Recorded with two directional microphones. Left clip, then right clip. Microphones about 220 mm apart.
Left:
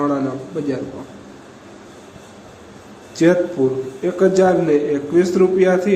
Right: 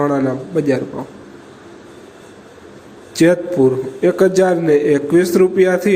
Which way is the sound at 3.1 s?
20° right (ahead or behind).